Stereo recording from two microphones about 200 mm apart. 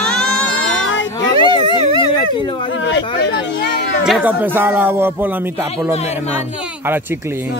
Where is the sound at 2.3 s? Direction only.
25° left (ahead or behind).